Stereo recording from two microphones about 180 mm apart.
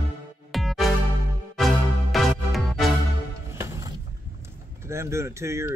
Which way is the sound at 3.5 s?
15° right (ahead or behind).